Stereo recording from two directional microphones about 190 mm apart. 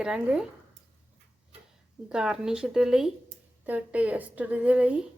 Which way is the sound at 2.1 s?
5° right (ahead or behind).